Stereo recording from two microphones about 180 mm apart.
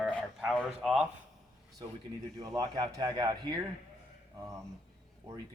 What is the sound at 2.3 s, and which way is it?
Speech, 20° right (ahead or behind).